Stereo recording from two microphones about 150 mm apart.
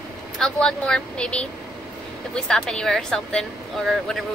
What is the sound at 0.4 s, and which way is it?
A woman's voice, 5° left (ahead or behind).